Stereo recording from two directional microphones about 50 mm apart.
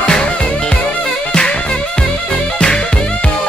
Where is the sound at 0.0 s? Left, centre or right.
Left.